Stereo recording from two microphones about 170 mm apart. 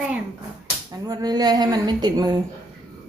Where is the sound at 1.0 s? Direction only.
25° right (ahead or behind).